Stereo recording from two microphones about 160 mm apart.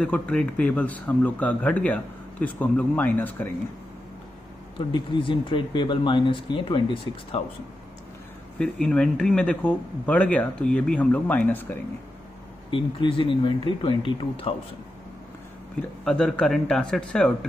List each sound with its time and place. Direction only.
0.0 s speech: 5° left (ahead or behind)
4.7 s speech: 30° left (ahead or behind)
8.5 s speech: 5° left (ahead or behind)
12.7 s speech: 35° left (ahead or behind)
16.0 s a man's voice: centre (ahead or behind)